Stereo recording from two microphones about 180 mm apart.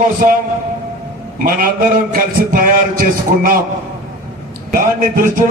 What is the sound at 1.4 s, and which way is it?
A man's voice, 50° right (ahead or behind).